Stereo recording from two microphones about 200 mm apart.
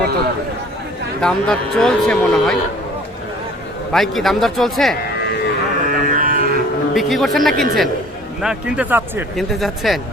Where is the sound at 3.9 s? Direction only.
Centre (ahead or behind).